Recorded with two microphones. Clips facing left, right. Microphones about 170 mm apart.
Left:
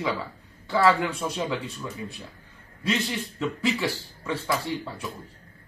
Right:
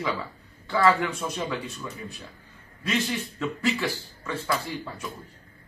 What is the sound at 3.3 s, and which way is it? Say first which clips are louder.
Speech: left 1 dB; 30° left (ahead or behind).